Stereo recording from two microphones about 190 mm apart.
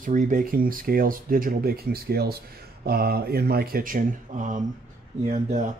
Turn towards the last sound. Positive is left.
turn(degrees=-40)  # may be behind; listen again after turning